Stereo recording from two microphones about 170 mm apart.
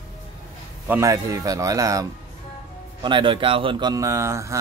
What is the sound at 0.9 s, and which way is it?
Speech, 20° right (ahead or behind).